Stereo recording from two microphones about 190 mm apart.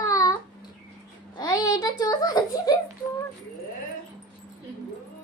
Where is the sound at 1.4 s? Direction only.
20° left (ahead or behind).